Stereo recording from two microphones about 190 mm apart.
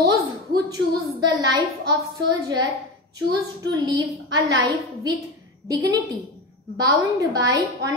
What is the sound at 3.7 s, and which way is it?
A woman's voice, 20° right (ahead or behind).